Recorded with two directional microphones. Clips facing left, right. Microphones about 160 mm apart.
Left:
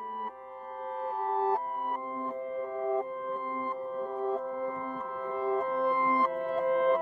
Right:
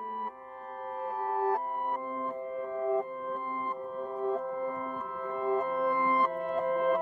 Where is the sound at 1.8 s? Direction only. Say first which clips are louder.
Right 1 dB; 10° left (ahead or behind).